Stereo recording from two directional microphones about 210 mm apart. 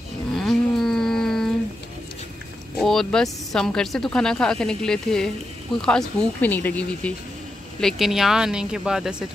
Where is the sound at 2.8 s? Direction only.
Centre (ahead or behind).